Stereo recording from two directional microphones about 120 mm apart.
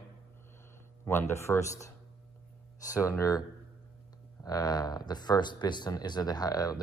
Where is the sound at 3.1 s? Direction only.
30° left (ahead or behind).